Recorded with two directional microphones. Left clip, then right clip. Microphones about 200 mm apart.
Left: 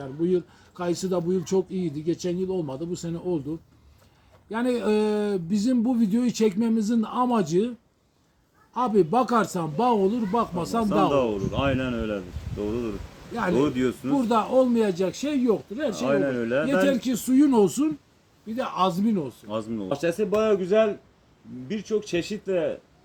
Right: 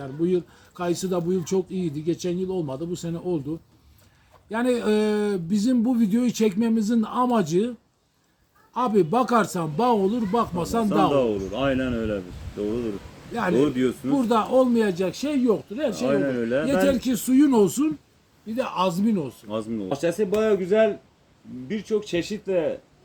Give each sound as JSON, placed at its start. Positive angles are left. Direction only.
{"t": 0.0, "sound": "speech", "side_deg": -15}
{"t": 4.4, "sound": "speech", "side_deg": -15}
{"t": 8.7, "sound": "speech", "side_deg": -15}
{"t": 11.1, "sound": "a man's voice", "side_deg": 5}
{"t": 13.3, "sound": "speech", "side_deg": -15}
{"t": 13.6, "sound": "a man's voice", "side_deg": 10}
{"t": 14.1, "sound": "speech", "side_deg": -10}
{"t": 16.0, "sound": "a man's voice", "side_deg": 5}
{"t": 16.8, "sound": "speech", "side_deg": -15}
{"t": 19.5, "sound": "a man's voice", "side_deg": 10}